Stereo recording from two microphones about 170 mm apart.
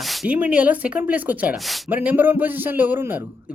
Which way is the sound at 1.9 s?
10° right (ahead or behind).